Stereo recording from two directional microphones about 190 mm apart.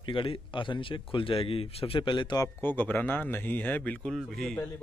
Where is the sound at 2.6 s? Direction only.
10° left (ahead or behind).